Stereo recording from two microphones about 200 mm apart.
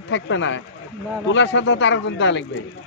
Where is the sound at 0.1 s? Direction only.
65° left (ahead or behind).